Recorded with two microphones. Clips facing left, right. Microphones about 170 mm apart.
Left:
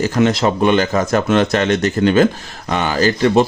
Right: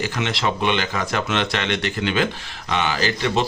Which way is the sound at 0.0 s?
45° left (ahead or behind).